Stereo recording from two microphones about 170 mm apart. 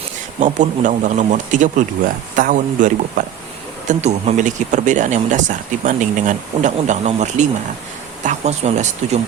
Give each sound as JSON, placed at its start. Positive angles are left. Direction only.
{"t": 0.3, "sound": "speech", "side_deg": -45}